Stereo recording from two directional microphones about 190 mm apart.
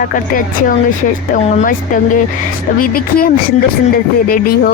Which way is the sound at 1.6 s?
45° left (ahead or behind).